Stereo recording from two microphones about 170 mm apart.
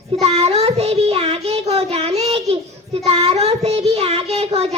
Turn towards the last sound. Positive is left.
turn(degrees=-35)  # may be behind; listen again after turning